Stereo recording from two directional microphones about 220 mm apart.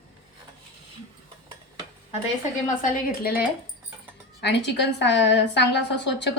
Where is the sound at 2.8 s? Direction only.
45° left (ahead or behind).